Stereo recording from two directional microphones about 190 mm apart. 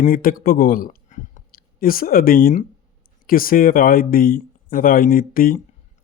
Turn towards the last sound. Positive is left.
turn(degrees=50)  # may be behind; listen again after turning